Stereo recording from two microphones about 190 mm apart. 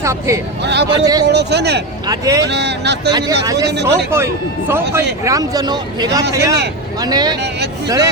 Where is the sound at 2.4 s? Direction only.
60° right (ahead or behind).